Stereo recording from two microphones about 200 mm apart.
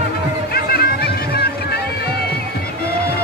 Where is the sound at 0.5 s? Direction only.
50° left (ahead or behind).